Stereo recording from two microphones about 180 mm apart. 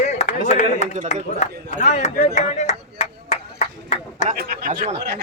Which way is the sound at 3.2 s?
40° left (ahead or behind).